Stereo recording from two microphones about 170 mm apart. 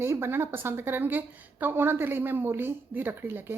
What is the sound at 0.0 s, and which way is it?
A woman's voice, 15° right (ahead or behind).